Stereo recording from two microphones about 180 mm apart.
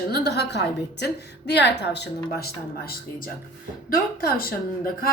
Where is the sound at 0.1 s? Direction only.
65° left (ahead or behind).